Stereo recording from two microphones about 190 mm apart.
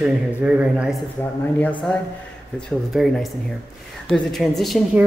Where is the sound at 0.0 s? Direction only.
5° right (ahead or behind).